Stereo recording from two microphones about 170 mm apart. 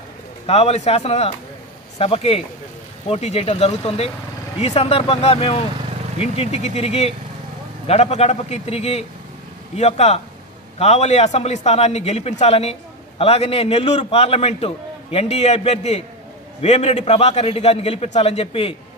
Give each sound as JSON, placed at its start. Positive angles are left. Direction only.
{"t": 0.5, "sound": "a man's voice", "side_deg": 40}